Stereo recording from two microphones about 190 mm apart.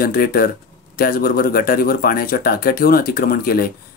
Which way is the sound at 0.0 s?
50° left (ahead or behind).